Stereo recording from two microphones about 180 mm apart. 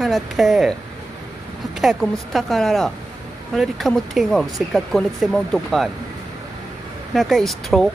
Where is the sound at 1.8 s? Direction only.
Centre (ahead or behind).